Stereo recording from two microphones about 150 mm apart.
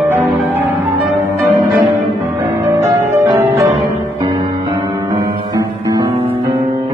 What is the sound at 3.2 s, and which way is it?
Music, 20° right (ahead or behind).